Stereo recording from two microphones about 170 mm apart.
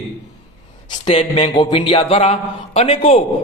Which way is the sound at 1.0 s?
35° left (ahead or behind).